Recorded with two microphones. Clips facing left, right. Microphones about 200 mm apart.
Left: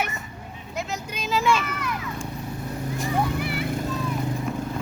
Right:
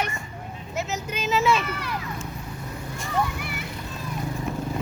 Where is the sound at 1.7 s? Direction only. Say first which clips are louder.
Left 1 dB; 30° right (ahead or behind).